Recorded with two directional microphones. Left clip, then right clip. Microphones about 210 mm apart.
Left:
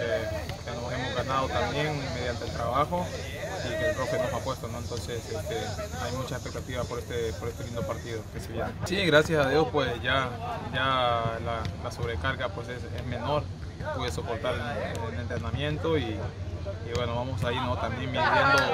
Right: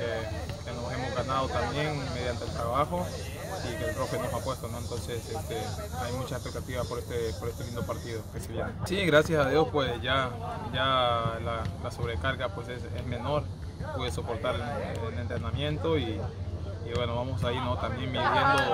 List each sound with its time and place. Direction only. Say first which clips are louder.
0.9 s a sound: left 1 dB; centre (ahead or behind)
1.8 s speech: left 2 dB; centre (ahead or behind)
6.7 s speech: even; centre (ahead or behind)
8.8 s speech: left 1 dB; 5° left (ahead or behind)
15.6 s speech: left 1 dB; centre (ahead or behind)
18.1 s speech: left 2 dB; 40° left (ahead or behind)